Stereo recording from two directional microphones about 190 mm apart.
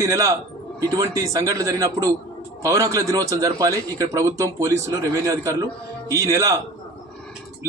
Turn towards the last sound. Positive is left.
turn(degrees=-15)  # may be behind; listen again after turning